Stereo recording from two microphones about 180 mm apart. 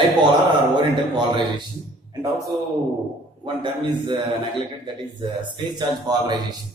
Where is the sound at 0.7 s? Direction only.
25° right (ahead or behind).